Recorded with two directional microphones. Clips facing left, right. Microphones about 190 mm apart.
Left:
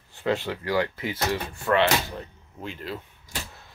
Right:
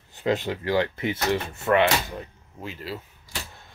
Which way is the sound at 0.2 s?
20° right (ahead or behind).